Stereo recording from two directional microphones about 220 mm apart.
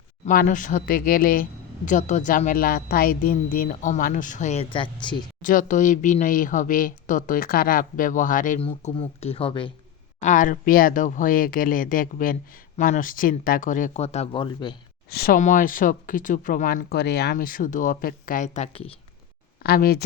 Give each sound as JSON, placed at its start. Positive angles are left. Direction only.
{"t": 0.3, "sound": "speech", "side_deg": 35}
{"t": 5.4, "sound": "speech", "side_deg": 35}
{"t": 10.2, "sound": "speech", "side_deg": 35}
{"t": 15.1, "sound": "speech", "side_deg": 40}
{"t": 19.6, "sound": "speech", "side_deg": 45}